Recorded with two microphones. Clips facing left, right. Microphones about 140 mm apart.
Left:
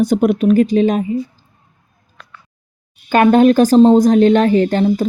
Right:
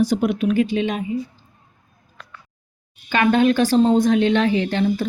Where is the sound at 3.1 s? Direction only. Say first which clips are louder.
Left 7 dB; 45° left (ahead or behind).